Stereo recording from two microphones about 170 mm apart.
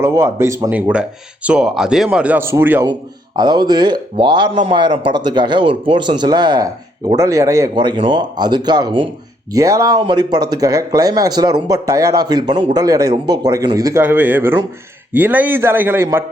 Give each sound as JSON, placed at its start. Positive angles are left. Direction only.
{"t": 0.0, "sound": "speech", "side_deg": -15}
{"t": 3.3, "sound": "speech", "side_deg": -25}